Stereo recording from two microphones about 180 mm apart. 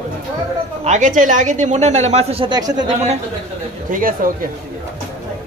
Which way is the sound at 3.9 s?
50° right (ahead or behind).